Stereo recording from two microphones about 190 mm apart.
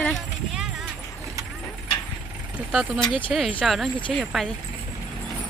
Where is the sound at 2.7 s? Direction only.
5° right (ahead or behind).